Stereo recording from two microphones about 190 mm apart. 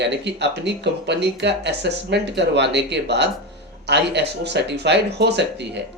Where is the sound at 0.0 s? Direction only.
65° right (ahead or behind).